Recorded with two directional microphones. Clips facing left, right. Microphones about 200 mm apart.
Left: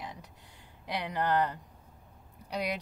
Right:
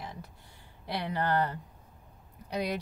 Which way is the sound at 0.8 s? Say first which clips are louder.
Even; 15° left (ahead or behind).